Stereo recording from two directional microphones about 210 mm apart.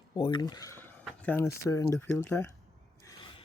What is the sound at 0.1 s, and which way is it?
Speech, 20° left (ahead or behind).